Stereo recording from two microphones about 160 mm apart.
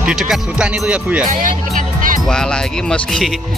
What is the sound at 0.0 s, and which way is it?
Speech, centre (ahead or behind).